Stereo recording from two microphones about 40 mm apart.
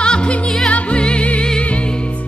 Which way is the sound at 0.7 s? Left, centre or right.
Left.